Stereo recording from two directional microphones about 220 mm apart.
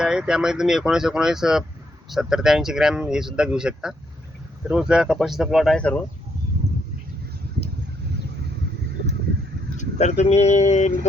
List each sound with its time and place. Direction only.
0.0 s speech: 5° right (ahead or behind)
9.7 s speech: 30° left (ahead or behind)